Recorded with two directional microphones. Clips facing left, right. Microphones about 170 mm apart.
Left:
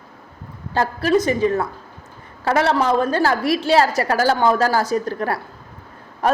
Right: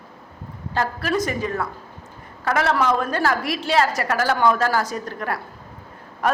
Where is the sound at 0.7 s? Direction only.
30° left (ahead or behind).